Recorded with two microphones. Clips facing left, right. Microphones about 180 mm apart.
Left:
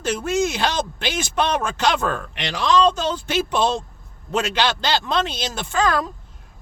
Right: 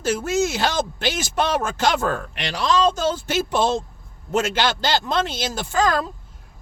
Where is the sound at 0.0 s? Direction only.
45° right (ahead or behind).